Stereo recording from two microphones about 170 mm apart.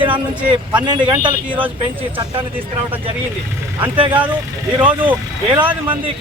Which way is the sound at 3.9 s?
30° right (ahead or behind).